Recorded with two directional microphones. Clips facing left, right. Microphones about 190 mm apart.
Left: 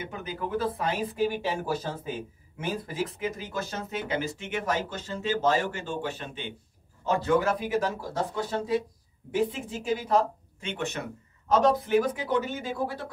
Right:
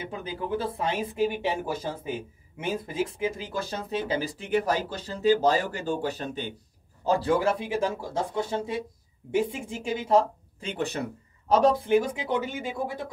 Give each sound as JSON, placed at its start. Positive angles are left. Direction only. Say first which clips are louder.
{"t": 0.0, "sound": "speech", "louder": "right 1 dB", "side_deg": -30}
{"t": 9.8, "sound": "speech", "louder": "right 2 dB", "side_deg": -25}
{"t": 12.3, "sound": "speech", "louder": "left 1 dB", "side_deg": -20}